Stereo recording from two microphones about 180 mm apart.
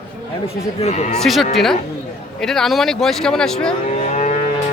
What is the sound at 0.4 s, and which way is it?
Speech, 35° left (ahead or behind).